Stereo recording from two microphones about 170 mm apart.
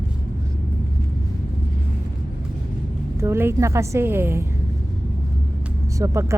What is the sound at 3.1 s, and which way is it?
A woman's voice, 15° right (ahead or behind).